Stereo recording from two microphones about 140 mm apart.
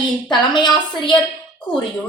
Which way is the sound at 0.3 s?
35° left (ahead or behind).